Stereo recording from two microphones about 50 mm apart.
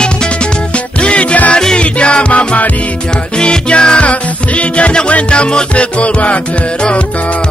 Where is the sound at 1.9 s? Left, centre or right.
Left.